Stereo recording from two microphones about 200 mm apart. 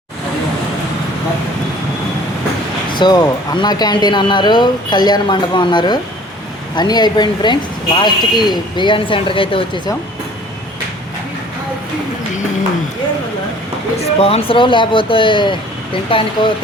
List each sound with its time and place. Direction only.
2.9 s a sound: 20° left (ahead or behind)
3.6 s speech: 20° left (ahead or behind)
14.0 s speech: 30° left (ahead or behind)